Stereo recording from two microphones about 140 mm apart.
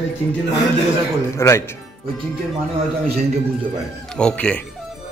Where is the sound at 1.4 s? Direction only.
20° left (ahead or behind).